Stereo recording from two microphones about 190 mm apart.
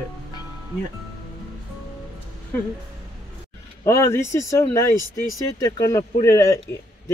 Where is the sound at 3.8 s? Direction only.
15° left (ahead or behind).